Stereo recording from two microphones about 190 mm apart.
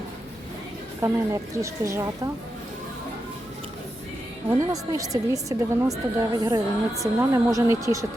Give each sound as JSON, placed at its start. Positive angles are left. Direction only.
{"t": 1.0, "sound": "speech", "side_deg": -15}
{"t": 4.4, "sound": "speech", "side_deg": -20}